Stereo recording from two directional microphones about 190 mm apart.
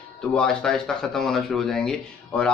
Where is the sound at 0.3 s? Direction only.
5° left (ahead or behind).